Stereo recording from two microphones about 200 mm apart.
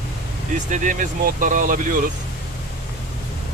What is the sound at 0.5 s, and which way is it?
Speech, 40° right (ahead or behind).